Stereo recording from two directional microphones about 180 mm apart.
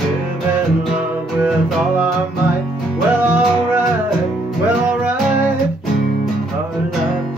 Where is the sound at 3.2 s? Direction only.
10° right (ahead or behind).